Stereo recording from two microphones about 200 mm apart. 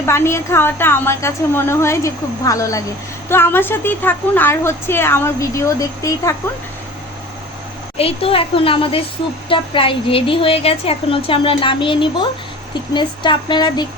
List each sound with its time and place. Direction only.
0.0 s a woman's voice: 15° left (ahead or behind)
7.9 s a woman's voice: 30° left (ahead or behind)